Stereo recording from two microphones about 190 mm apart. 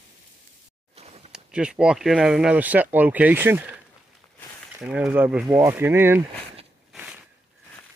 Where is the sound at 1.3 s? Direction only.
5° right (ahead or behind).